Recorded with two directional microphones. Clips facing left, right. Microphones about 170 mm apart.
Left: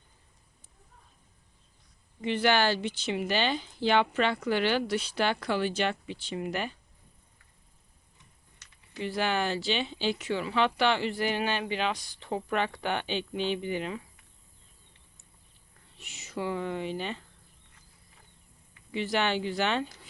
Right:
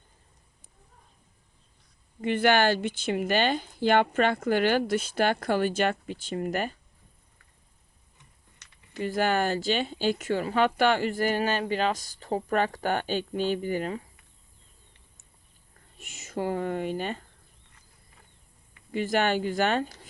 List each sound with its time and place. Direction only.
2.2 s speech: 50° right (ahead or behind)
9.0 s speech: 45° right (ahead or behind)
16.0 s speech: 50° right (ahead or behind)
18.9 s speech: 50° right (ahead or behind)